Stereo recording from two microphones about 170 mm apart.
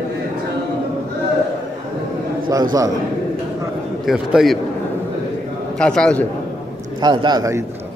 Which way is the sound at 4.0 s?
Centre (ahead or behind).